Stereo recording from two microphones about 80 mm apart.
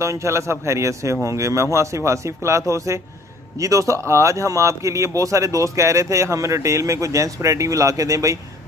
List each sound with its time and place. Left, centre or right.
0.0 s speech: right